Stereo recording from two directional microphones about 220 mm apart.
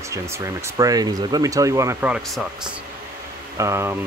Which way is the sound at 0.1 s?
15° right (ahead or behind).